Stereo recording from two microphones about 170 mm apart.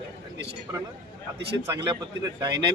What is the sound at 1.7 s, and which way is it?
Speech, 25° right (ahead or behind).